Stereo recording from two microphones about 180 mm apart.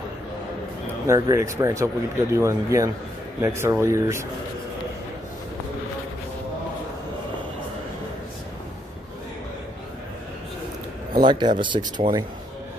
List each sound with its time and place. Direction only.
1.0 s speech: 15° right (ahead or behind)
11.1 s speech: 25° right (ahead or behind)